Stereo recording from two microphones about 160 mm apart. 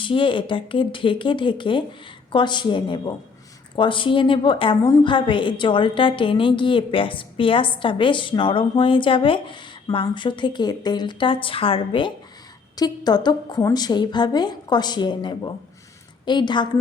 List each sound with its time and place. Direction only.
0.0 s a woman's voice: 30° left (ahead or behind)